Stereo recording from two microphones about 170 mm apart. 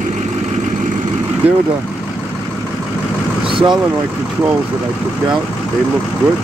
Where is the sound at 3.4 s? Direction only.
30° right (ahead or behind).